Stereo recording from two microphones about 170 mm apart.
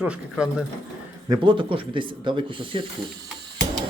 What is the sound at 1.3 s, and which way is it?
Speech, 30° right (ahead or behind).